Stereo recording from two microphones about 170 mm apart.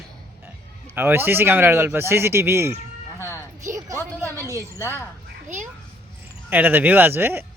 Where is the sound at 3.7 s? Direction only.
20° right (ahead or behind).